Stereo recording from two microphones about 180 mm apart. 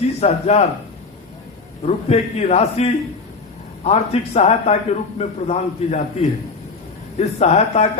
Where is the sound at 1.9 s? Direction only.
35° left (ahead or behind).